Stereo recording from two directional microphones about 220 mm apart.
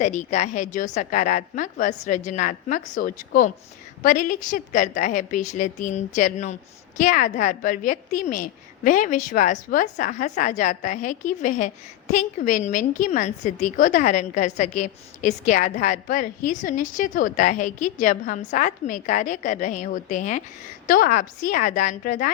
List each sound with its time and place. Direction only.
0.0 s a woman's voice: 30° left (ahead or behind)